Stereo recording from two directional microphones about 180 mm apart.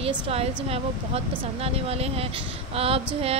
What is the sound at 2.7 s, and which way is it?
Female singing, 35° right (ahead or behind).